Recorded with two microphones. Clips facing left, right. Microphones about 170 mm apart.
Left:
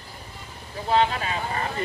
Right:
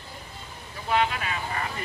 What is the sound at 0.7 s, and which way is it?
Vehicle, 30° left (ahead or behind).